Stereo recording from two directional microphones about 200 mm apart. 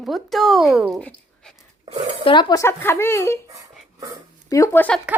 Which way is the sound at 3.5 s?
20° right (ahead or behind).